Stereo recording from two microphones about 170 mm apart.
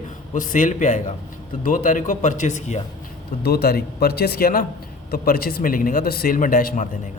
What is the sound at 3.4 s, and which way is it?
A man's voice, 65° left (ahead or behind).